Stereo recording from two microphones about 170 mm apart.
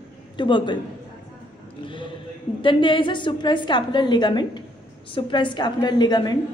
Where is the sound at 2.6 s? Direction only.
30° left (ahead or behind).